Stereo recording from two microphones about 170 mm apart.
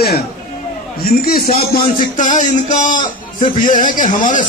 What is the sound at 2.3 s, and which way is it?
A man's voice, 45° left (ahead or behind).